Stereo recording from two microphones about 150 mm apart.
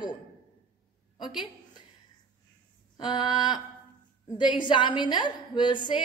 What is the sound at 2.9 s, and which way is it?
A woman's voice, 30° left (ahead or behind).